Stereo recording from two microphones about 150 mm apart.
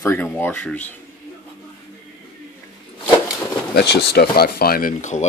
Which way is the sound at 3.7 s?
90° left.